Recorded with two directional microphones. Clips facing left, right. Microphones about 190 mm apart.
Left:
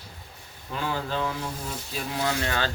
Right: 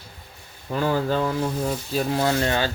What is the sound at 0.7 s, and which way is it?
Speech, 45° right (ahead or behind).